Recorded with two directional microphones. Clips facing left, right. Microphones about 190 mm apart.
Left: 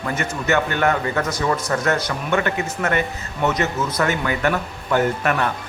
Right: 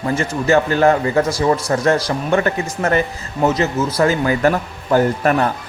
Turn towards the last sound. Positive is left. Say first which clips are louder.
# right 4 dB
turn(degrees=-35)  # may be behind; listen again after turning